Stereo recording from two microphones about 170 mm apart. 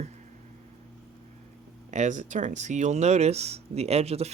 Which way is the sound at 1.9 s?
45° right (ahead or behind).